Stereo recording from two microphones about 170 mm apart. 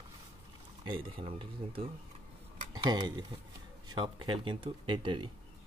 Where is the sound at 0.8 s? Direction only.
30° right (ahead or behind).